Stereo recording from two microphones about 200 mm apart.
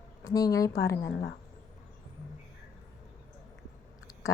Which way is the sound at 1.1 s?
50° left (ahead or behind).